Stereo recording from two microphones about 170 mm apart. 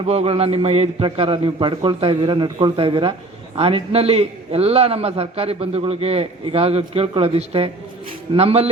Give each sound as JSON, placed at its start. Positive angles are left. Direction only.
{"t": 0.0, "sound": "a man's voice", "side_deg": -35}